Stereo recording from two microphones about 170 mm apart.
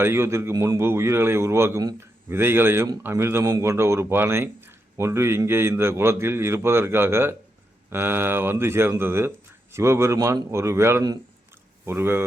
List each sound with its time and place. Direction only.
0.0 s a man's voice: 15° right (ahead or behind)